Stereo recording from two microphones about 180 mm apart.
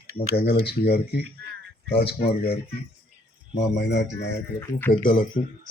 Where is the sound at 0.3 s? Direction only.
60° left (ahead or behind).